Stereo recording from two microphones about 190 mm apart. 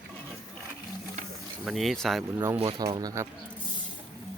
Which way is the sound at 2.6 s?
30° right (ahead or behind).